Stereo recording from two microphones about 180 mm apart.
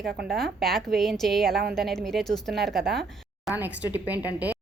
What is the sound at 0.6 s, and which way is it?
A woman's voice, centre (ahead or behind).